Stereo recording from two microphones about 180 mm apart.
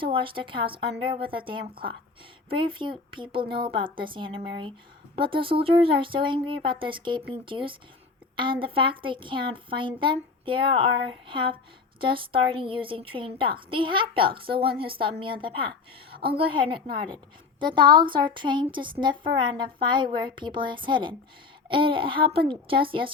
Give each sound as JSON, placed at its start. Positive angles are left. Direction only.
{"t": 0.0, "sound": "a woman's voice", "side_deg": -30}